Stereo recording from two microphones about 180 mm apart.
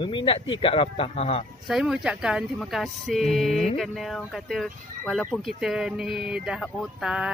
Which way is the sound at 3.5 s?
35° left (ahead or behind).